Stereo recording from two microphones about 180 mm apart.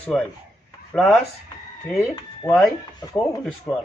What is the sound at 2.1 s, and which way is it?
Speech, 15° left (ahead or behind).